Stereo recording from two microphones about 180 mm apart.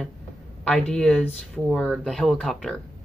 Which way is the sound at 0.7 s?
5° left (ahead or behind).